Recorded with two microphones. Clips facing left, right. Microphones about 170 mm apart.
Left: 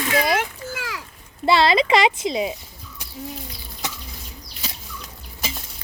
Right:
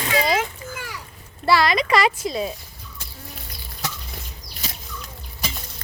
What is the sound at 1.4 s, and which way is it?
Speech, 25° left (ahead or behind).